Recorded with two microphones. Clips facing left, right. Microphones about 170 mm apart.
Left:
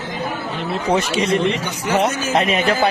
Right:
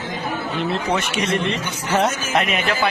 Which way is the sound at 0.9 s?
30° left (ahead or behind).